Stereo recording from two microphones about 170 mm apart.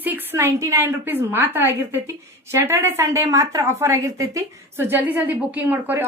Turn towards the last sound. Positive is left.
turn(degrees=-10)  # may be behind; listen again after turning